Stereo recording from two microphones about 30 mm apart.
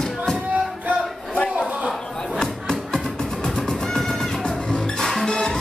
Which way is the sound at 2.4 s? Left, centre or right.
Left.